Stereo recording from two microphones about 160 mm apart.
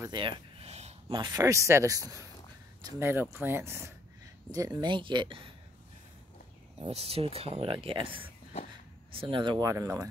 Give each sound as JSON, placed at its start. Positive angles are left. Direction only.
{"t": 0.0, "sound": "a sound", "side_deg": -30}
{"t": 1.1, "sound": "speech", "side_deg": -25}
{"t": 6.9, "sound": "speech", "side_deg": -40}
{"t": 9.1, "sound": "speech", "side_deg": -35}